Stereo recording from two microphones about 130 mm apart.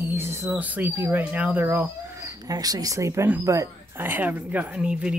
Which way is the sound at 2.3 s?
25° right (ahead or behind).